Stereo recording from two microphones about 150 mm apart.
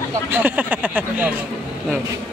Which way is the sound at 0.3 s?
15° right (ahead or behind).